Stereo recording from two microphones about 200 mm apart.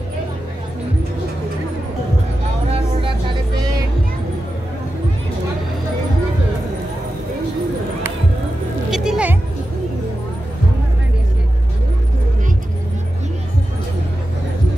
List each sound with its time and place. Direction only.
2.7 s vehicle: 25° right (ahead or behind)
8.9 s music: 5° right (ahead or behind)